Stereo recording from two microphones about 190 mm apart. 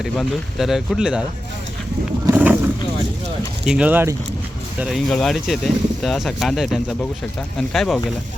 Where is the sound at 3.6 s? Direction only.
5° right (ahead or behind).